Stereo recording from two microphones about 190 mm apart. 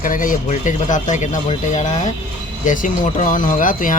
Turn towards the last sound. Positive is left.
turn(degrees=45)  # may be behind; listen again after turning